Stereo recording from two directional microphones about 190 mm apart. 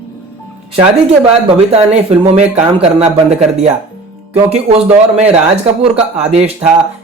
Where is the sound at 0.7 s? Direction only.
30° right (ahead or behind).